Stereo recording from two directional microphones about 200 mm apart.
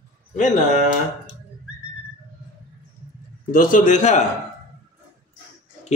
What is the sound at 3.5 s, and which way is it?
Speech, 40° left (ahead or behind).